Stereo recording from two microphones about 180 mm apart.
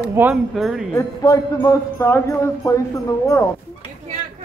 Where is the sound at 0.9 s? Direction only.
20° left (ahead or behind).